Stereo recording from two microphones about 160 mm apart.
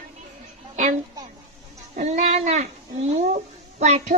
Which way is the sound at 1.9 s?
45° right (ahead or behind).